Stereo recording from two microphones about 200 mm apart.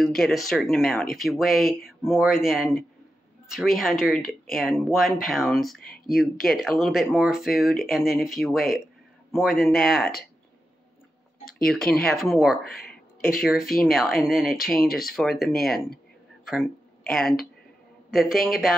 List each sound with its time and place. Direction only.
0.0 s speech: centre (ahead or behind)
5.9 s a sound: 50° left (ahead or behind)
6.4 s speech: centre (ahead or behind)
11.5 s speech: centre (ahead or behind)